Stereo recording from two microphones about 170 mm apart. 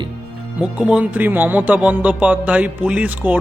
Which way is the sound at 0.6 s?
5° right (ahead or behind).